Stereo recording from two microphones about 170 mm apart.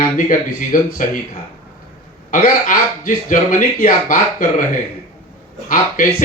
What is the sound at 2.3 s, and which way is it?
Speech, 50° left (ahead or behind).